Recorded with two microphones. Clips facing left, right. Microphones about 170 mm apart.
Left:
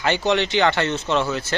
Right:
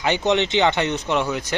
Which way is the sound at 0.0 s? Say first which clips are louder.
Right 1 dB; 20° right (ahead or behind).